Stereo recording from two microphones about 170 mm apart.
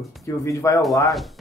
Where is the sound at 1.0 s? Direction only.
Centre (ahead or behind).